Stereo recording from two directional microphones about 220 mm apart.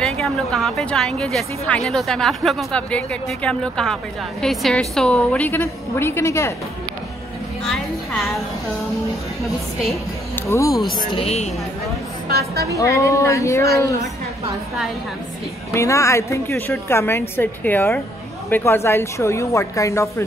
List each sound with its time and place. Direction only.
0.0 s a woman's voice: centre (ahead or behind)
7.6 s speech: centre (ahead or behind)
9.4 s speech: centre (ahead or behind)
10.4 s speech: 15° left (ahead or behind)
11.1 s a woman's voice: 25° left (ahead or behind)
12.3 s a woman's voice: 45° right (ahead or behind)
12.7 s speech: 15° left (ahead or behind)
15.7 s speech: 15° left (ahead or behind)